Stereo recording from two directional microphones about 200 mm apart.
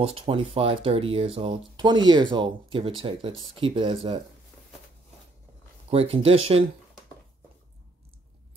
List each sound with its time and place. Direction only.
0.0 s speech: 30° right (ahead or behind)
5.9 s speech: 30° right (ahead or behind)